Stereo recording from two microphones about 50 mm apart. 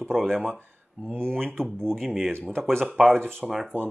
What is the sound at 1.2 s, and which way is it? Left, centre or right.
Speech, centre.